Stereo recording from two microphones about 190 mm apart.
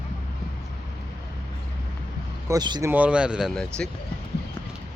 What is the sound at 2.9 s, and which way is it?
Speech, 5° right (ahead or behind).